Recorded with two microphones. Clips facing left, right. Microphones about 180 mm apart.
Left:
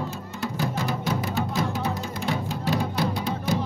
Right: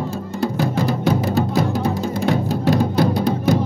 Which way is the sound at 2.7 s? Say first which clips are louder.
Right 8 dB; 40° right (ahead or behind).